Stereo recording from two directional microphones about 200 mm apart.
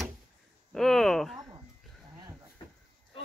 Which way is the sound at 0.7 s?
Centre (ahead or behind).